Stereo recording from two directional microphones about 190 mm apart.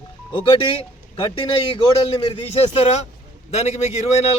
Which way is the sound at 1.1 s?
30° left (ahead or behind).